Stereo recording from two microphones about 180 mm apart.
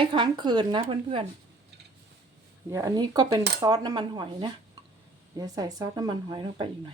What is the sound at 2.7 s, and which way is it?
A woman's voice, 20° right (ahead or behind).